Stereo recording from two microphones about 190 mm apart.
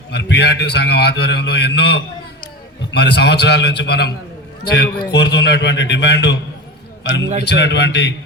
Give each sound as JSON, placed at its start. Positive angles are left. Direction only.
{"t": 0.1, "sound": "a man's voice", "side_deg": 65}